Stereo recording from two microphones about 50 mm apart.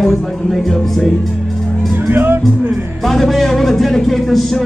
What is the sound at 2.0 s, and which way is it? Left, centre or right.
Music, right.